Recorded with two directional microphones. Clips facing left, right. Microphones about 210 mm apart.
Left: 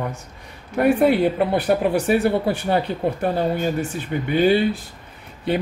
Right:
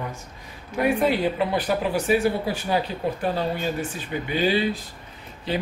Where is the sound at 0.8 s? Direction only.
55° left (ahead or behind).